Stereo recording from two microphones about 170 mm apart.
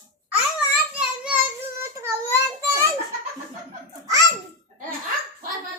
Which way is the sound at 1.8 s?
15° right (ahead or behind).